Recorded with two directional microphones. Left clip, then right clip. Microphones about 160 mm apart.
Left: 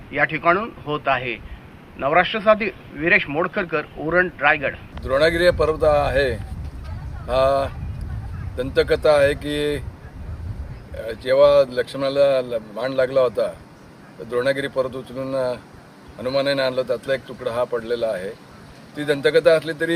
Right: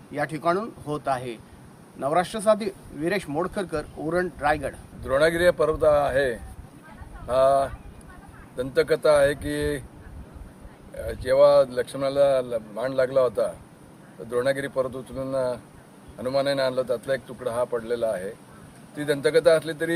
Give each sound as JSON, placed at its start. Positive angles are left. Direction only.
{"t": 0.1, "sound": "speech", "side_deg": -25}
{"t": 5.0, "sound": "speech", "side_deg": 0}
{"t": 10.9, "sound": "speech", "side_deg": 0}